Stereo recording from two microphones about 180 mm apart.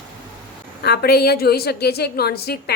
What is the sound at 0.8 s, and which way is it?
A woman's voice, 60° left (ahead or behind).